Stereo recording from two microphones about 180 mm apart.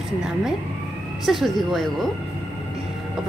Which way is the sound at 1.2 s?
Centre (ahead or behind).